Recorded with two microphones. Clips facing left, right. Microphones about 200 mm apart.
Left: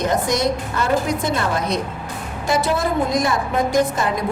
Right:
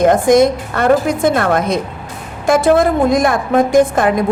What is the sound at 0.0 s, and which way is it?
A woman's voice, 55° right (ahead or behind).